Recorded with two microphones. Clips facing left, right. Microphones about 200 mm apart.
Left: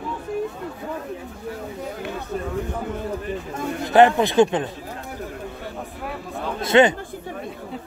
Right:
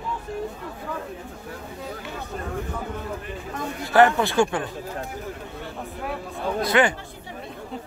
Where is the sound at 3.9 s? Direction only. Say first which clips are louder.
Left 3 dB; 20° left (ahead or behind).